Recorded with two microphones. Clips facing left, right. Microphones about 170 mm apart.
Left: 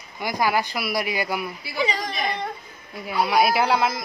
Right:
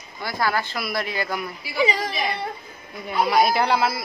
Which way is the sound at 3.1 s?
5° left (ahead or behind).